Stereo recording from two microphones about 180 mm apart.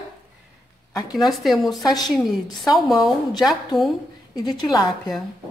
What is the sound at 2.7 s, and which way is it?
Speech, centre (ahead or behind).